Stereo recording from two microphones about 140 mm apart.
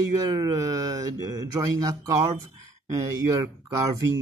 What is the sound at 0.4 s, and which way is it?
Speech, 25° right (ahead or behind).